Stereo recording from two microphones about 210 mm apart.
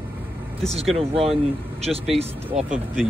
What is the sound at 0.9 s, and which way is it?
Speech, 25° right (ahead or behind).